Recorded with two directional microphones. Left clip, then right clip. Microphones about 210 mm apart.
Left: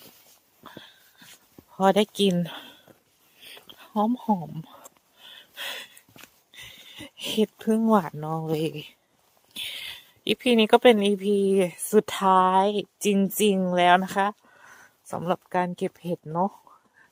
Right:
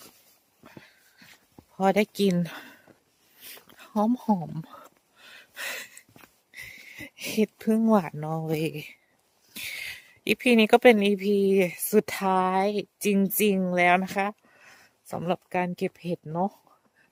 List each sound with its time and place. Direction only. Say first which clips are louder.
0.6 s dog: left 5 dB; centre (ahead or behind)
1.7 s speech: left 3 dB; centre (ahead or behind)
2.3 s speech: left 1 dB; 15° right (ahead or behind)
3.4 s a sound: left 2 dB; 20° right (ahead or behind)
5.2 s gasp: even; 20° right (ahead or behind)
6.6 s a woman's voice: right 1 dB; 15° right (ahead or behind)